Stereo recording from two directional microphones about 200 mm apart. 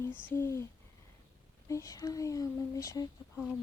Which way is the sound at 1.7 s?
15° left (ahead or behind).